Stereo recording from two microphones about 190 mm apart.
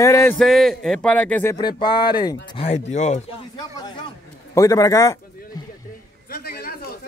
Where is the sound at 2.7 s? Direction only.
35° left (ahead or behind).